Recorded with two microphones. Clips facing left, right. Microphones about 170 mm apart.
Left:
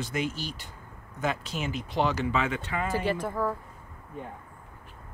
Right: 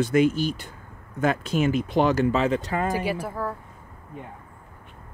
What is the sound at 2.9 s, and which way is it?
Speech, 10° right (ahead or behind).